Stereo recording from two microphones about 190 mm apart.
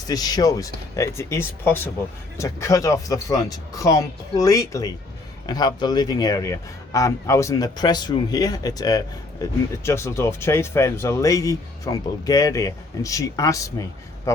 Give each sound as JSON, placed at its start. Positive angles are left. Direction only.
{"t": 0.1, "sound": "a man's voice", "side_deg": 20}